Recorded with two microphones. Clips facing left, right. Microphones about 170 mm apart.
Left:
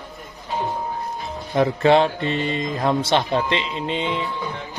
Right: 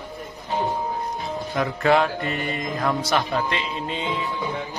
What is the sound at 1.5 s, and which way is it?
Speech, 30° left (ahead or behind).